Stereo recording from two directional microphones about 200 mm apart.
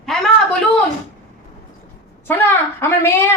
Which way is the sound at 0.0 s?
Centre (ahead or behind).